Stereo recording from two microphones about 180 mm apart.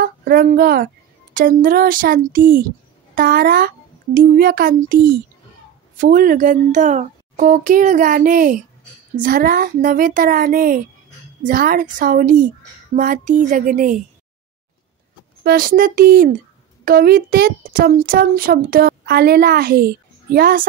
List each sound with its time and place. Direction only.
0.0 s a child's voice: 55° right (ahead or behind)
15.4 s a child's voice: 55° right (ahead or behind)